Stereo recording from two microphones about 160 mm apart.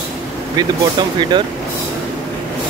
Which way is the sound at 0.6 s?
30° right (ahead or behind).